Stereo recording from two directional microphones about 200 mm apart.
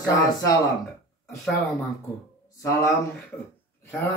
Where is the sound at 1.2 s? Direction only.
Centre (ahead or behind).